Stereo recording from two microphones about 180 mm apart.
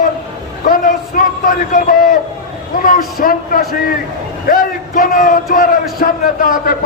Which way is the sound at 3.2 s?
55° left (ahead or behind).